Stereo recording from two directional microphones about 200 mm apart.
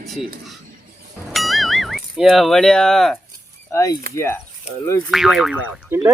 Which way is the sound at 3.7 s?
15° left (ahead or behind).